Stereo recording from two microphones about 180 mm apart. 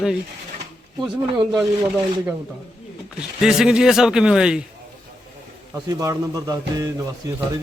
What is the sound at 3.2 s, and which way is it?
Speech, 5° right (ahead or behind).